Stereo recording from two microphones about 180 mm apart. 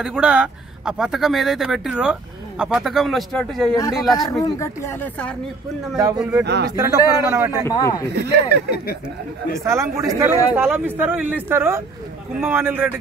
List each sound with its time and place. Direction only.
0.0 s speech: 5° right (ahead or behind)
4.2 s speech: 20° left (ahead or behind)
6.1 s speech: 5° right (ahead or behind)
6.4 s speech: 70° right (ahead or behind)
6.7 s speech: 20° right (ahead or behind)
7.6 s speech: 20° left (ahead or behind)
8.2 s speech: 70° right (ahead or behind)
9.7 s speech: 15° right (ahead or behind)